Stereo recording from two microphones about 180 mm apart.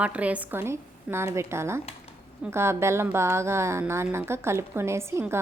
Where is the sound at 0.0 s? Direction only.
5° right (ahead or behind).